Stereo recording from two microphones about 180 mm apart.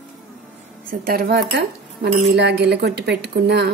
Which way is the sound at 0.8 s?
55° right (ahead or behind).